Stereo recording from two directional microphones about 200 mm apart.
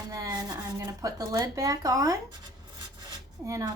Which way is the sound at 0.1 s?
20° right (ahead or behind).